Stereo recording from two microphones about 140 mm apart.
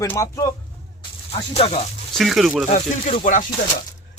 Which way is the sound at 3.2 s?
65° left (ahead or behind).